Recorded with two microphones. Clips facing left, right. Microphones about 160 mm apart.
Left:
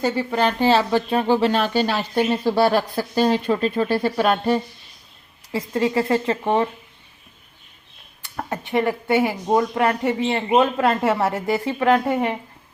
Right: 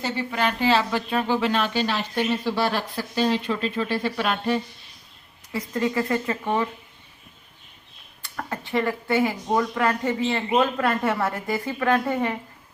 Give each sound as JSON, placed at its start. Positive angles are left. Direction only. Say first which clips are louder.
{"t": 0.0, "sound": "speech", "louder": "left 5 dB", "side_deg": 35}
{"t": 5.5, "sound": "speech", "louder": "left 4 dB", "side_deg": 30}
{"t": 8.2, "sound": "speech", "louder": "left 3 dB", "side_deg": 20}